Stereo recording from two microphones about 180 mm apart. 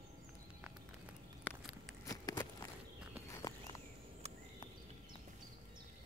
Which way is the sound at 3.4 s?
20° left (ahead or behind).